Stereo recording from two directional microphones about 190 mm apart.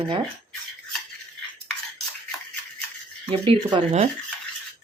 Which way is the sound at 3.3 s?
25° right (ahead or behind).